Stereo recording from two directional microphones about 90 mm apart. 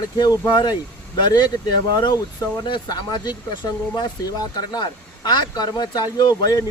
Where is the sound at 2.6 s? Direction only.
60° left (ahead or behind).